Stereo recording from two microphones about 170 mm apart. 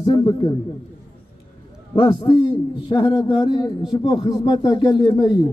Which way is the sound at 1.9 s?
30° left (ahead or behind).